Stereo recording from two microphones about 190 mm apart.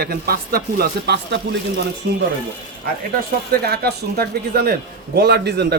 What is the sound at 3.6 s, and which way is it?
A man's voice, 55° right (ahead or behind).